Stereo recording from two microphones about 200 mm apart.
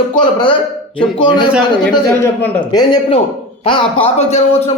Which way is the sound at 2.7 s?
20° left (ahead or behind).